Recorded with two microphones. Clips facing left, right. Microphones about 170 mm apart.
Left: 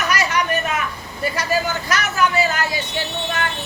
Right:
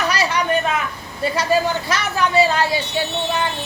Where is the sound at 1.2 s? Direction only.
30° right (ahead or behind).